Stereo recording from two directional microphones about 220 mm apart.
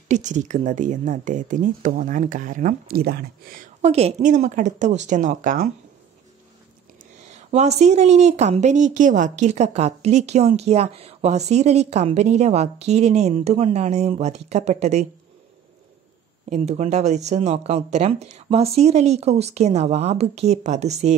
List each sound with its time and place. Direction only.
0.1 s a woman's voice: 35° right (ahead or behind)
3.8 s a woman's voice: 30° right (ahead or behind)
7.0 s a woman's voice: 30° right (ahead or behind)
16.4 s speech: 30° right (ahead or behind)